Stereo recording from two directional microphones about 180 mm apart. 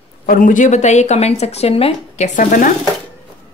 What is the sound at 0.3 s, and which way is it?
Speech, 45° left (ahead or behind).